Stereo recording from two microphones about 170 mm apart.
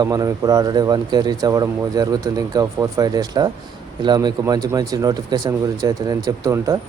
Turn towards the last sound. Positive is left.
turn(degrees=-20)  # may be behind; listen again after turning